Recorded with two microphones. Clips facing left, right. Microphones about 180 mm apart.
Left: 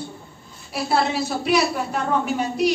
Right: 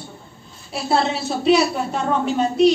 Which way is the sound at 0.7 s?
25° right (ahead or behind).